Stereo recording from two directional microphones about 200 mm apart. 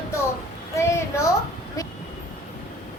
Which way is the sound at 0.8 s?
15° left (ahead or behind).